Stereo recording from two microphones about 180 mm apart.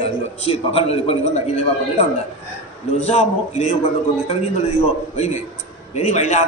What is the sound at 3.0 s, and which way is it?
Speech, 35° left (ahead or behind).